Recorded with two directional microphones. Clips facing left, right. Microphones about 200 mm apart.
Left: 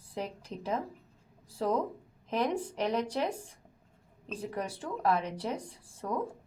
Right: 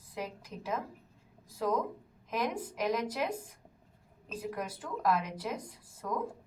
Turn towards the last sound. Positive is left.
turn(degrees=30)  # may be behind; listen again after turning